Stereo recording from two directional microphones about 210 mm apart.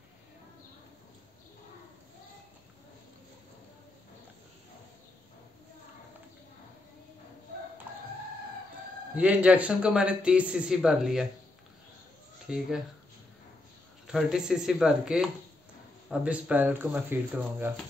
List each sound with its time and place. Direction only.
9.1 s speech: 5° right (ahead or behind)
12.4 s speech: centre (ahead or behind)
14.0 s speech: 5° right (ahead or behind)